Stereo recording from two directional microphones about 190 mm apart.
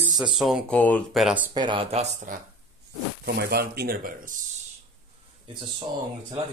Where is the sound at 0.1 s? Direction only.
Centre (ahead or behind).